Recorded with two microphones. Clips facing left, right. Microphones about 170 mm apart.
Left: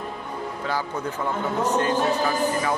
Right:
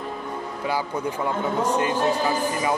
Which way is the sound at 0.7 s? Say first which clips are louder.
Right 3 dB; 10° right (ahead or behind).